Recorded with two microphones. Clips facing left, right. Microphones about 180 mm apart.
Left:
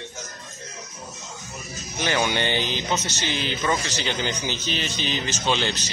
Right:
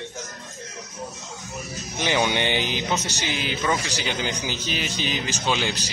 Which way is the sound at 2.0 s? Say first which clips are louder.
Right 1 dB; 15° right (ahead or behind).